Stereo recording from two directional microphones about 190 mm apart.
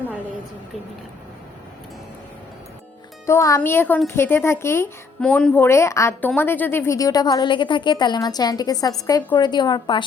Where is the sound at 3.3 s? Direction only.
15° left (ahead or behind).